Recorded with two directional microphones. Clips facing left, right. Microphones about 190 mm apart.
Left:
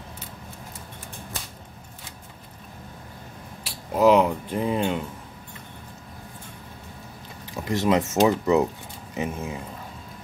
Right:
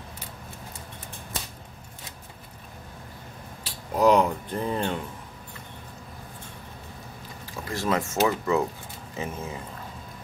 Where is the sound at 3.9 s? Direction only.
5° left (ahead or behind).